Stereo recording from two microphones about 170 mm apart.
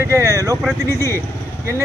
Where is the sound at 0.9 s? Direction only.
15° left (ahead or behind).